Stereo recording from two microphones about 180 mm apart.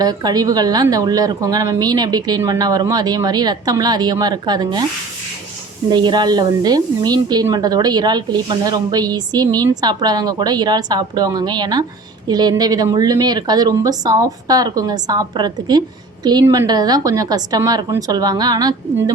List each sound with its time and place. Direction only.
0.0 s speech: 20° right (ahead or behind)
5.9 s speech: 25° right (ahead or behind)